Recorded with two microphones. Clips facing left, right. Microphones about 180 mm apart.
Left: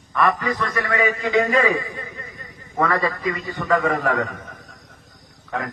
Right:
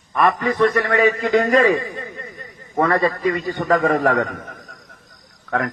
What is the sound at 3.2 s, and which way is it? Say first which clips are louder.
Speech: right 5 dB; 40° right (ahead or behind).